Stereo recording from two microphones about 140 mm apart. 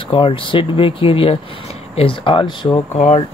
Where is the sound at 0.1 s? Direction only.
40° left (ahead or behind).